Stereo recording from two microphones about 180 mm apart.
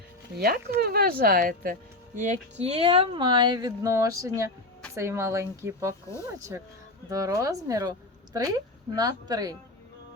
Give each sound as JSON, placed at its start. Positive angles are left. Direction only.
{"t": 0.3, "sound": "speech", "side_deg": -60}
{"t": 2.1, "sound": "a woman's voice", "side_deg": -40}
{"t": 7.1, "sound": "a woman's voice", "side_deg": -20}